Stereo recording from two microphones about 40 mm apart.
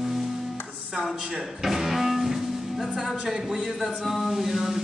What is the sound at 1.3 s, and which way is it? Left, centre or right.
Music, centre.